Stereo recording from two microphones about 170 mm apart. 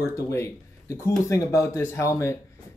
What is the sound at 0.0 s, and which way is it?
Speech, 15° left (ahead or behind).